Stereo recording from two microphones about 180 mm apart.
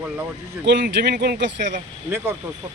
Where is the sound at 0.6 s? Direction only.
70° right (ahead or behind).